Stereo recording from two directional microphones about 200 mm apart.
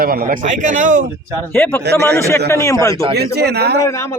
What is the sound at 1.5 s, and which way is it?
Speech, 10° left (ahead or behind).